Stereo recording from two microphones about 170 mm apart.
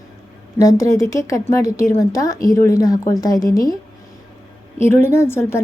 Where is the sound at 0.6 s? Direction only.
20° left (ahead or behind).